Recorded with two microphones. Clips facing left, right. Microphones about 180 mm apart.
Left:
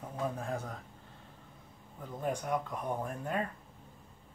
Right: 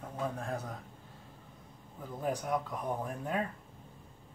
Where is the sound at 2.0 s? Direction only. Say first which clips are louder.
Even; 5° right (ahead or behind).